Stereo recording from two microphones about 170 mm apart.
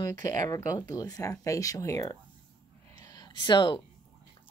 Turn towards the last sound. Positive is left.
turn(degrees=25)  # may be behind; listen again after turning